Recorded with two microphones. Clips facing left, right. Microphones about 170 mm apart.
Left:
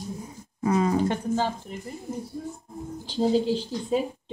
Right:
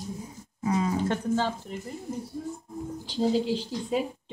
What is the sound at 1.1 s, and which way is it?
Speech, 15° left (ahead or behind).